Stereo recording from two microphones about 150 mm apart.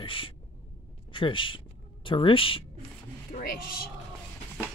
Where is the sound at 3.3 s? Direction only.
70° left (ahead or behind).